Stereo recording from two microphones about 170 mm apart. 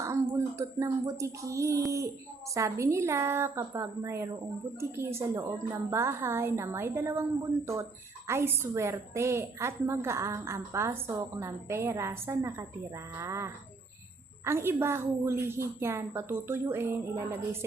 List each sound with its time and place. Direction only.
0.0 s a woman's voice: 15° right (ahead or behind)
8.3 s a woman's voice: 15° right (ahead or behind)